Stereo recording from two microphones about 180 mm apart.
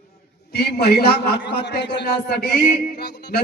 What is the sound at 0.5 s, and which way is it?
A man's voice, 65° left (ahead or behind).